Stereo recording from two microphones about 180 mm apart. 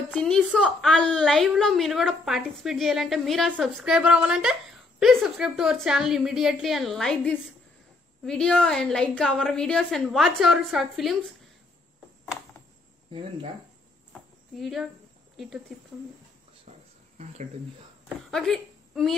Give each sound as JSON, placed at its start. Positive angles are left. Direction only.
{"t": 0.1, "sound": "a woman's voice", "side_deg": 5}
{"t": 14.6, "sound": "a woman's voice", "side_deg": 0}
{"t": 18.0, "sound": "a sound", "side_deg": 0}